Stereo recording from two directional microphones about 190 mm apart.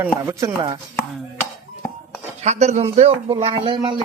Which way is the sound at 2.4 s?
35° right (ahead or behind).